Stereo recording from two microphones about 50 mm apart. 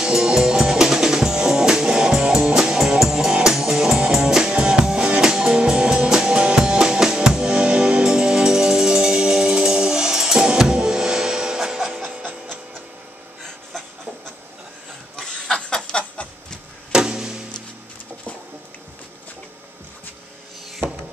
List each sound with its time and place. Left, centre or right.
0.0 s music: centre
15.1 s a sound: centre
16.9 s music: centre